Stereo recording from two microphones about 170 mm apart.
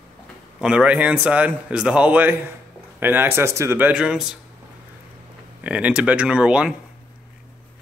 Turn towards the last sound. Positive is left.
turn(degrees=-5)  # may be behind; listen again after turning